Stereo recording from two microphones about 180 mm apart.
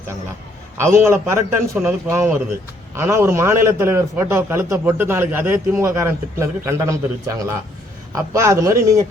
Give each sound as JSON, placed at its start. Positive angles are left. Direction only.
{"t": 0.8, "sound": "a man's voice", "side_deg": -15}